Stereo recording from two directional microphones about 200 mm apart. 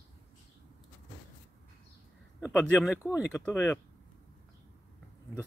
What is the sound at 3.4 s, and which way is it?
Speech, 15° left (ahead or behind).